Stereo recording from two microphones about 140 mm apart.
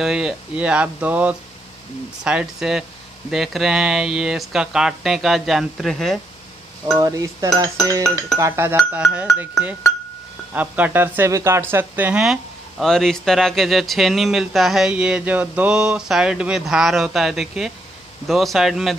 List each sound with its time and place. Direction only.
0.0 s speech: 5° right (ahead or behind)
7.0 s dishes: 25° right (ahead or behind)
8.4 s speech: 20° right (ahead or behind); by 18.9 s centre (ahead or behind)